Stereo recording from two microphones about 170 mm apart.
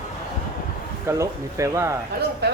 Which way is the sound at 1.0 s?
15° right (ahead or behind).